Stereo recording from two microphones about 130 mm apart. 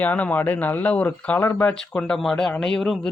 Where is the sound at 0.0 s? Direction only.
10° left (ahead or behind).